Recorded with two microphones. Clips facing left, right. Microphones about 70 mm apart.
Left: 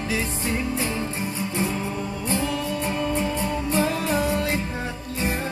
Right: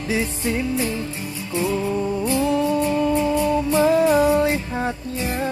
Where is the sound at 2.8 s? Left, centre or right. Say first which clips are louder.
Right 6 dB; left.